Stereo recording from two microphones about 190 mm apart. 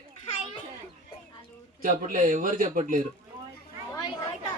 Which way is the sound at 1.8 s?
45° right (ahead or behind).